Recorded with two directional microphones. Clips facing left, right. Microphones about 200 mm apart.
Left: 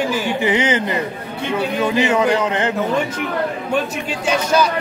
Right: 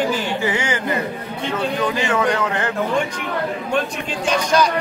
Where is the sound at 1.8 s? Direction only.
20° left (ahead or behind).